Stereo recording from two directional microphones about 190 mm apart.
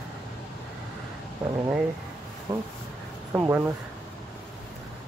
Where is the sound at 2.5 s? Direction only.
15° right (ahead or behind).